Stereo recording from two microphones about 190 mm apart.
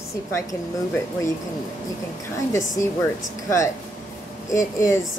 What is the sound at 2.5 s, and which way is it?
A woman's voice, 15° left (ahead or behind).